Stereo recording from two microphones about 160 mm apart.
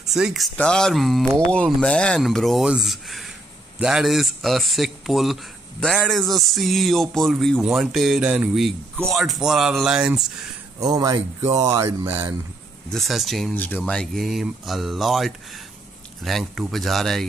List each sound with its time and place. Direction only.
0.0 s a man's voice: centre (ahead or behind)
10.8 s speech: 25° right (ahead or behind)
12.9 s a man's voice: centre (ahead or behind)